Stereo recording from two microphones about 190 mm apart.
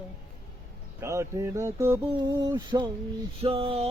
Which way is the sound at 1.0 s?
15° right (ahead or behind).